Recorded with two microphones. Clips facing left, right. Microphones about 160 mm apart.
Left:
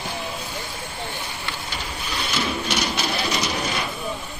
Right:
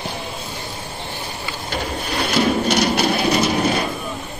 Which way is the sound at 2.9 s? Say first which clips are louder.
Right 8 dB; 55° right (ahead or behind).